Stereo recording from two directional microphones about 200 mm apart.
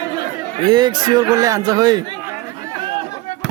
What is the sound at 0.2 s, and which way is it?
A man's voice, 20° right (ahead or behind).